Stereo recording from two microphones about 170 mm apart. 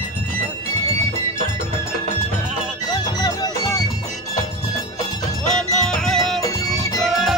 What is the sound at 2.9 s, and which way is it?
Music, 25° left (ahead or behind).